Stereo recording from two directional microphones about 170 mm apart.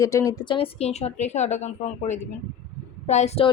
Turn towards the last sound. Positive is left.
turn(degrees=35)  # may be behind; listen again after turning